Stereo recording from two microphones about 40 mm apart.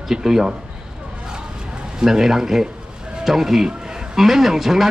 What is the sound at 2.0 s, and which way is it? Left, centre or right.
Speech, centre.